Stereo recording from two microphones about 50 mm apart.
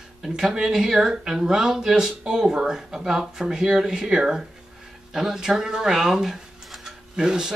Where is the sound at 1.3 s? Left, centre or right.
Centre.